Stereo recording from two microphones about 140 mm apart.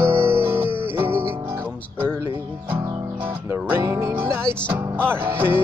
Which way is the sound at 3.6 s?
20° right (ahead or behind).